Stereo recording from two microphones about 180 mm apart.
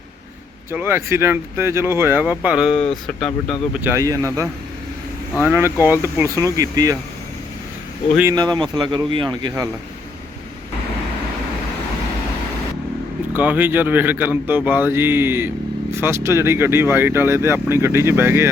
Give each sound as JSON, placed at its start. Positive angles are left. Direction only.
{"t": 0.7, "sound": "speech", "side_deg": -10}
{"t": 3.8, "sound": "speech", "side_deg": -15}
{"t": 5.5, "sound": "speech", "side_deg": -10}
{"t": 8.2, "sound": "speech", "side_deg": -20}
{"t": 13.3, "sound": "speech", "side_deg": -10}